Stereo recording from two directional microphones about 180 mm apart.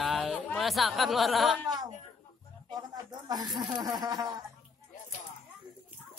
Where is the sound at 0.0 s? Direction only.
Centre (ahead or behind).